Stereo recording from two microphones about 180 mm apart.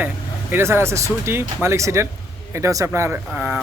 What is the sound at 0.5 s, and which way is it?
Speech, 15° right (ahead or behind).